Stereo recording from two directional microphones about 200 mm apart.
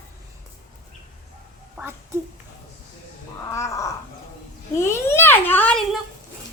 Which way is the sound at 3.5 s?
15° left (ahead or behind).